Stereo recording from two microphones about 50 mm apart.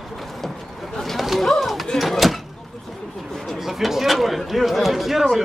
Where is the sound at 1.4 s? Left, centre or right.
Centre.